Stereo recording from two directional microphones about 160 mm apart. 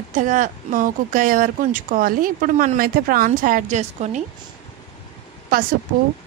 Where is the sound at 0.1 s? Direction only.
55° right (ahead or behind).